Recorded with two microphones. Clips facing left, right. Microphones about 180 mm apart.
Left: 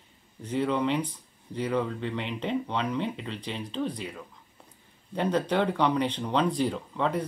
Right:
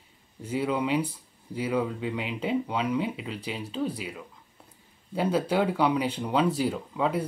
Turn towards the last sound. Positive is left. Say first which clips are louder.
# right 1 dB
turn(degrees=-5)  # may be behind; listen again after turning